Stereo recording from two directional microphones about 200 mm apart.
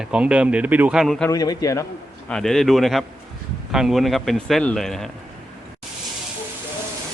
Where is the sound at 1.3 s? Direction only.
20° left (ahead or behind).